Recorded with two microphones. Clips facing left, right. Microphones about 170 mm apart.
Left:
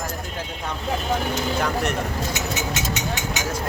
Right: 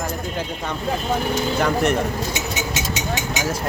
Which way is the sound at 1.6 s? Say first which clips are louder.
Right 7 dB; centre (ahead or behind).